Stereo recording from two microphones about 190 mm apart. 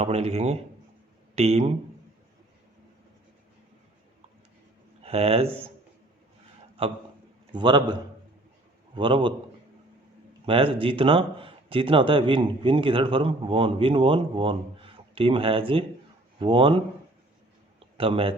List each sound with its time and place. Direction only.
0.0 s speech: 35° right (ahead or behind)
5.0 s speech: 30° right (ahead or behind)
6.8 s a man's voice: 30° right (ahead or behind)
9.0 s speech: 25° right (ahead or behind)
10.4 s speech: 30° right (ahead or behind)
17.7 s a sound: 30° right (ahead or behind)